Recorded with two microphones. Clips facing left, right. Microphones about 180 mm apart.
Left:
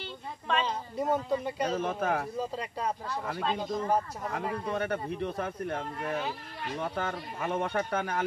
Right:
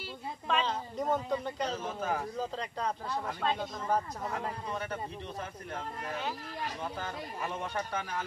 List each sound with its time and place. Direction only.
0.0 s a sound: 5° right (ahead or behind)
0.7 s speech: 10° left (ahead or behind)
1.7 s speech: 60° left (ahead or behind)
2.3 s speech: 10° left (ahead or behind)
4.7 s speech: 60° left (ahead or behind)
6.8 s speech: 65° left (ahead or behind)